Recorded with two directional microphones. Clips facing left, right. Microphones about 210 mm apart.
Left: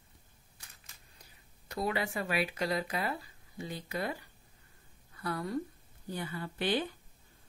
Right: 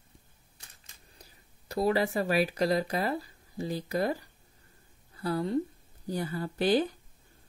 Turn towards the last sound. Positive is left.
turn(degrees=-40)  # may be behind; listen again after turning